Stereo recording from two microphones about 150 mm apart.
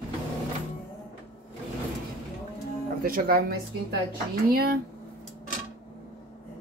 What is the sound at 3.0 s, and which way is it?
Speech, 80° right.